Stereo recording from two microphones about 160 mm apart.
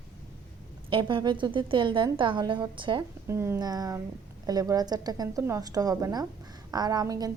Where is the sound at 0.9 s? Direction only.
30° right (ahead or behind).